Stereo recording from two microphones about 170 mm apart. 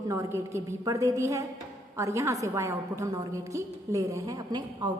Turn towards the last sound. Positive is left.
turn(degrees=-25)  # may be behind; listen again after turning